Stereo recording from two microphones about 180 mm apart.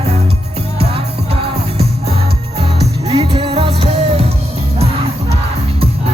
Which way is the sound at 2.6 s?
35° right (ahead or behind).